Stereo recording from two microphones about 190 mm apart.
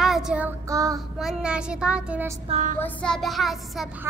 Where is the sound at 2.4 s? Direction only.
40° right (ahead or behind).